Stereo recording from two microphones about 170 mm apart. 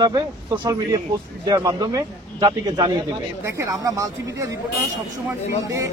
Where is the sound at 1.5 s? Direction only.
20° right (ahead or behind).